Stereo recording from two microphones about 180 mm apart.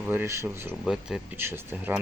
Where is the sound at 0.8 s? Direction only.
Centre (ahead or behind).